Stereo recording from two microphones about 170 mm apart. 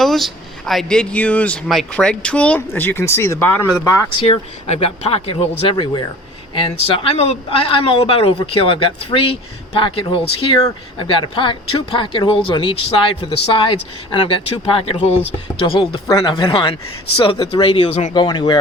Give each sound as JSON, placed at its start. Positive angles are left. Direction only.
{"t": 0.0, "sound": "speech", "side_deg": 0}
{"t": 4.1, "sound": "speech", "side_deg": 35}